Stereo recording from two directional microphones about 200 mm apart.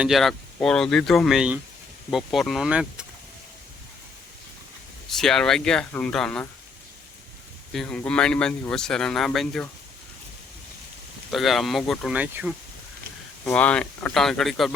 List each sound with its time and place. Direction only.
0.0 s speech: centre (ahead or behind)
5.1 s speech: centre (ahead or behind)
7.7 s speech: 5° left (ahead or behind)
11.3 s speech: centre (ahead or behind)
13.4 s speech: 5° left (ahead or behind)